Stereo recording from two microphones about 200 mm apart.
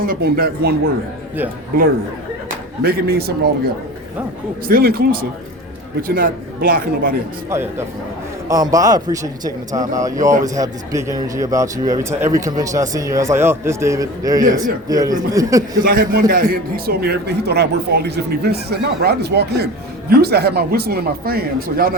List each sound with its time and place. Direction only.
0.0 s a man's voice: 50° right (ahead or behind)
2.8 s a man's voice: 50° right (ahead or behind)
4.7 s a man's voice: 50° right (ahead or behind)
7.5 s a man's voice: 10° right (ahead or behind)
15.8 s a man's voice: 45° right (ahead or behind)